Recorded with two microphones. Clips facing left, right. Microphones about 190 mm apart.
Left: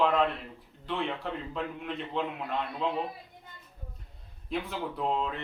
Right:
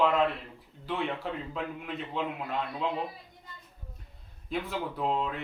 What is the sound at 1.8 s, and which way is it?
Speech, 5° right (ahead or behind).